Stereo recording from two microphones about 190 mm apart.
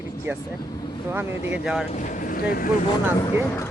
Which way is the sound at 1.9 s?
40° left (ahead or behind).